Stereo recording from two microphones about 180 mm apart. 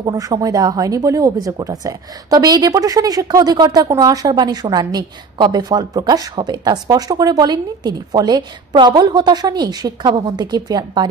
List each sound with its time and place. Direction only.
0.0 s speech: 20° right (ahead or behind)